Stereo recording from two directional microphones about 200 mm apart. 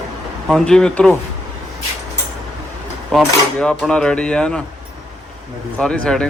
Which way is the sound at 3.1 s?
5° left (ahead or behind).